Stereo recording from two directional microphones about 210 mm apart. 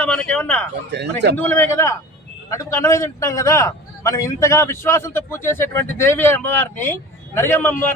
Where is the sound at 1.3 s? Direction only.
10° left (ahead or behind).